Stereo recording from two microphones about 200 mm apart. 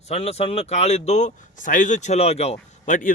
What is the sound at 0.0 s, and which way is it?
Speech, 30° left (ahead or behind).